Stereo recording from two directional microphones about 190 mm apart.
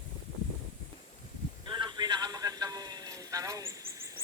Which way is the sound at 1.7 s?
25° right (ahead or behind).